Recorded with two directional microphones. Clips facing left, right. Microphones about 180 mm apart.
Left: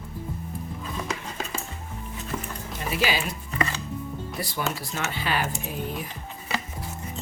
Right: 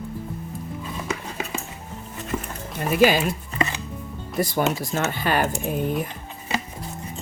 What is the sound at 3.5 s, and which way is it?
Music, 20° right (ahead or behind).